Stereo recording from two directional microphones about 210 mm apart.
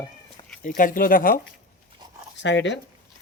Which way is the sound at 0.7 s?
40° left (ahead or behind).